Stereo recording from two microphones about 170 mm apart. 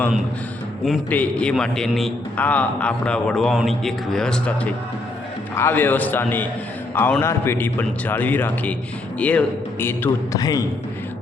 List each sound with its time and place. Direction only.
0.9 s a man's voice: 5° left (ahead or behind)